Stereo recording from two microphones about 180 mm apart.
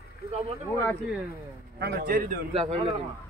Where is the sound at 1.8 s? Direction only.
60° right (ahead or behind).